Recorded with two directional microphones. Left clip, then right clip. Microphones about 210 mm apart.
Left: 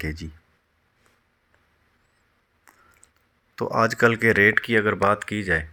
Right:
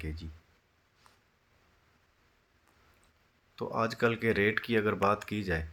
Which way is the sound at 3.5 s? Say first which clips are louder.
Left 11 dB; 35° left (ahead or behind).